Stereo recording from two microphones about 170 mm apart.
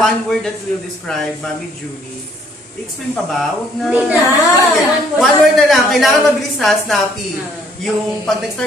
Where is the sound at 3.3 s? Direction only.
Centre (ahead or behind).